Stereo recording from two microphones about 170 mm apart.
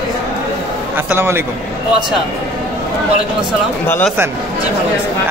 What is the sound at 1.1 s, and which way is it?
Speech, 15° right (ahead or behind).